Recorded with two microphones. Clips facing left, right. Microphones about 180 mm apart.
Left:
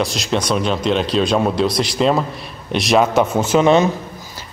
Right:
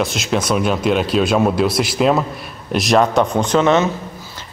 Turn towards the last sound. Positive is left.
turn(degrees=15)  # may be behind; listen again after turning